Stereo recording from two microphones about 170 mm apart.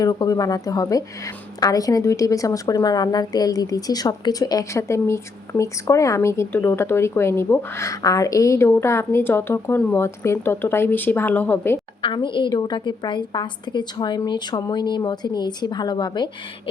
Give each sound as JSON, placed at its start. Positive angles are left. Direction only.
{"t": 0.0, "sound": "a woman's voice", "side_deg": 20}
{"t": 12.0, "sound": "a woman's voice", "side_deg": 30}